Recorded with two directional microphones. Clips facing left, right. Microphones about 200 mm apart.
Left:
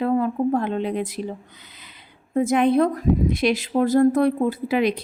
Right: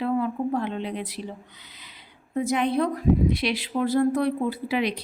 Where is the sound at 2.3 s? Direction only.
50° left (ahead or behind).